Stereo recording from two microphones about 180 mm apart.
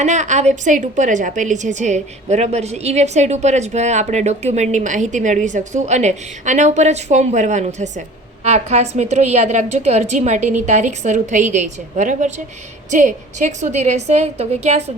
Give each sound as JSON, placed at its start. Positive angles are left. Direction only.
{"t": 0.0, "sound": "a woman's voice", "side_deg": -40}